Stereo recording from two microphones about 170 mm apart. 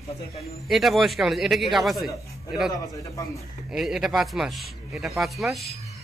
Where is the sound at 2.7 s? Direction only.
20° left (ahead or behind).